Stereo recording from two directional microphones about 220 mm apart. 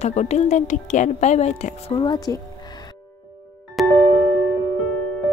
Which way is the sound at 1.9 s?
20° left (ahead or behind).